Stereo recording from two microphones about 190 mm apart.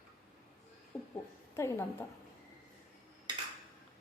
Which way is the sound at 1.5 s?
15° left (ahead or behind).